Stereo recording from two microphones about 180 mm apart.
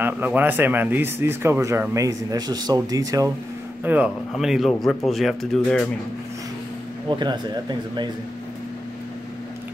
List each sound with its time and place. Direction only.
0.0 s speech: 10° right (ahead or behind)
3.8 s speech: 5° right (ahead or behind)
7.1 s speech: 25° right (ahead or behind)